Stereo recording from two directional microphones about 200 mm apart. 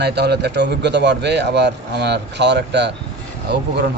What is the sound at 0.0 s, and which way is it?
Speech, 55° right (ahead or behind).